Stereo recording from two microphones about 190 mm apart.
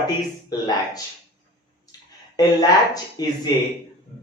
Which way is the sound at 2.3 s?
20° left (ahead or behind).